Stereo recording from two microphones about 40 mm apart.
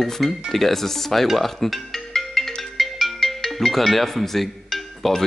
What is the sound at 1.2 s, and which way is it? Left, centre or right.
Music, centre.